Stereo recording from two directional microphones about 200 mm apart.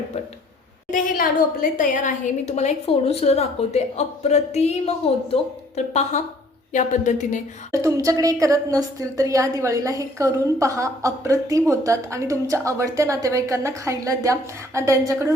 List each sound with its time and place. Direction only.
0.9 s a woman's voice: 40° left (ahead or behind)
7.7 s a woman's voice: 15° right (ahead or behind)